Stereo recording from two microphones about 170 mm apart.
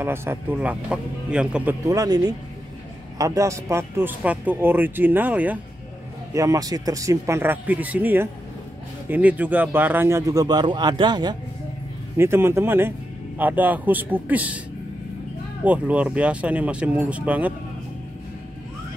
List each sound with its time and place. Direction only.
0.0 s speech: 15° right (ahead or behind)
1.9 s speech: 20° right (ahead or behind)
6.3 s speech: 20° right (ahead or behind)
12.2 s speech: 15° right (ahead or behind)
15.6 s speech: 10° right (ahead or behind)